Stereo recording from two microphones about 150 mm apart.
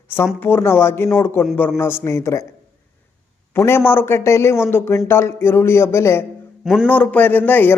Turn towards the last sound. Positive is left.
turn(degrees=10)  # may be behind; listen again after turning